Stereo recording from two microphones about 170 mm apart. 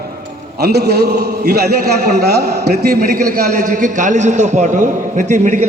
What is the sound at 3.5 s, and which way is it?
A man's voice, 50° right (ahead or behind).